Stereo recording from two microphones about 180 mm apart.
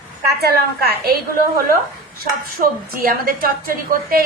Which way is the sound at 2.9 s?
55° right (ahead or behind).